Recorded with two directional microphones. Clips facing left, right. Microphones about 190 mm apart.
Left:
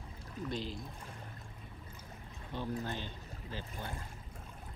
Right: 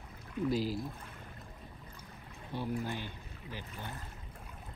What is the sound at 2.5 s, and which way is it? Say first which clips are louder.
Speech: right 2 dB; 10° right (ahead or behind).